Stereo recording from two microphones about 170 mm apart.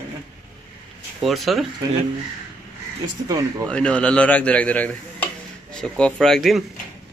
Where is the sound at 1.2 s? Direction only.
Centre (ahead or behind).